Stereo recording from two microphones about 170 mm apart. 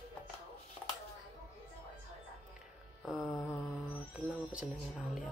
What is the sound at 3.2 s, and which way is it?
Mantra, 15° left (ahead or behind).